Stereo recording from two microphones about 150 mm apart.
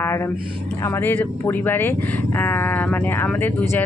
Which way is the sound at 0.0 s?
15° left (ahead or behind).